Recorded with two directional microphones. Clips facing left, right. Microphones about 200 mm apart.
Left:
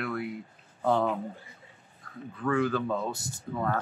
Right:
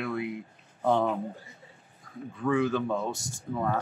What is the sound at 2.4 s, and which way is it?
Speech, 10° right (ahead or behind).